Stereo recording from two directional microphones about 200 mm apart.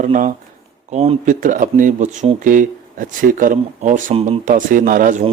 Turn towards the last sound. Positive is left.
turn(degrees=-35)  # may be behind; listen again after turning